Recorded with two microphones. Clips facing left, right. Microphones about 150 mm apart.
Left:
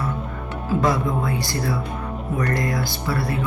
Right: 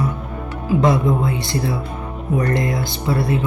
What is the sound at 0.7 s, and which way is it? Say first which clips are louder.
Speech: right 4 dB; 20° right (ahead or behind).